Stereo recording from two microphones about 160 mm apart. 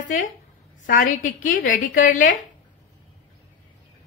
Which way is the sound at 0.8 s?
55° left (ahead or behind).